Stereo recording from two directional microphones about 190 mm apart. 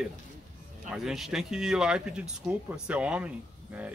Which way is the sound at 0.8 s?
Centre (ahead or behind).